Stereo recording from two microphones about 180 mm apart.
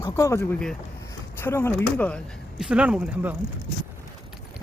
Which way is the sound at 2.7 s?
5° right (ahead or behind).